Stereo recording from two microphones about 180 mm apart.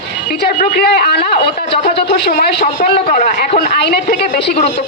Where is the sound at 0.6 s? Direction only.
65° left (ahead or behind).